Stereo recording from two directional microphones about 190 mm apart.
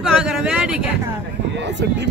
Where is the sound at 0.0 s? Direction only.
5° right (ahead or behind).